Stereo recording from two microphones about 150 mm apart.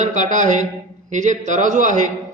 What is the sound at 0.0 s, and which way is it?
A man's voice, 55° right (ahead or behind).